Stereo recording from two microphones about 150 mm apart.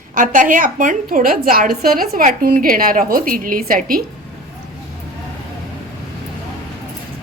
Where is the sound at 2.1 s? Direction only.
65° right (ahead or behind).